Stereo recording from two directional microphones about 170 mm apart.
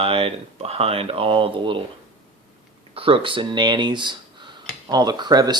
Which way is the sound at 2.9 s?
30° right (ahead or behind).